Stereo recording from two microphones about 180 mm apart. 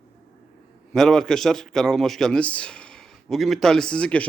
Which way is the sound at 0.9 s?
Centre (ahead or behind).